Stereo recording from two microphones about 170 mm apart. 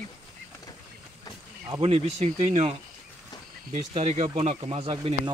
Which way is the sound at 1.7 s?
35° right (ahead or behind).